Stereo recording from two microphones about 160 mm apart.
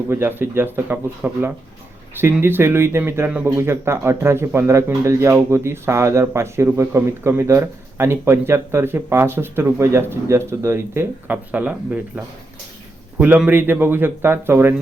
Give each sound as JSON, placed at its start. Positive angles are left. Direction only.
{"t": 0.1, "sound": "speech", "side_deg": -15}